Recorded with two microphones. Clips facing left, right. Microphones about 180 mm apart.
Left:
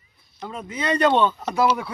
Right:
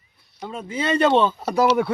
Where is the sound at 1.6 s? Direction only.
60° right (ahead or behind).